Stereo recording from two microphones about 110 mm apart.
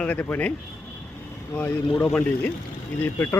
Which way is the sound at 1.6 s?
10° left (ahead or behind).